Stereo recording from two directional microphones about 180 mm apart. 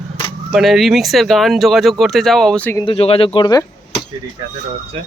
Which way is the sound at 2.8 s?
30° left (ahead or behind).